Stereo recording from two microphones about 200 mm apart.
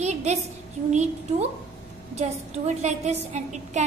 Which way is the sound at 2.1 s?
35° right (ahead or behind).